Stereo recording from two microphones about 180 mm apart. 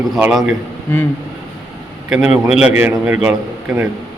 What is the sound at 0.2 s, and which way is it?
Speech, 5° right (ahead or behind).